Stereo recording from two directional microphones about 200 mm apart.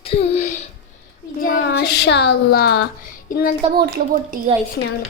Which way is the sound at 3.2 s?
45° left (ahead or behind).